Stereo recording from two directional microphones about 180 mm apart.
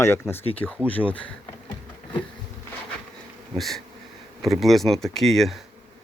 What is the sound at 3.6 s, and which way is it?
Speech, centre (ahead or behind).